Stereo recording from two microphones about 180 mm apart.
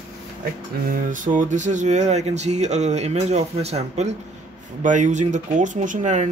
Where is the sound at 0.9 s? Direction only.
45° right (ahead or behind).